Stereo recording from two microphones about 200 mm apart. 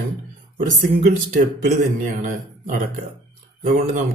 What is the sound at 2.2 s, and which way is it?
Speech, 40° right (ahead or behind).